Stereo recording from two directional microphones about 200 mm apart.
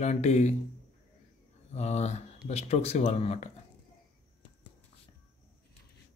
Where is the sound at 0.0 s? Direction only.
35° left (ahead or behind).